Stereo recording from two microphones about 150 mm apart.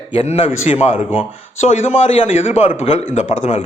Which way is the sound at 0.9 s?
5° right (ahead or behind).